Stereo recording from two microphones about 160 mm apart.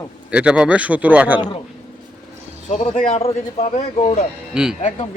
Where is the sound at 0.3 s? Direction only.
5° right (ahead or behind).